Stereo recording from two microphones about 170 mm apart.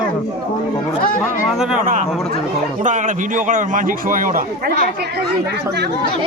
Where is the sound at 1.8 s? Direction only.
50° right (ahead or behind).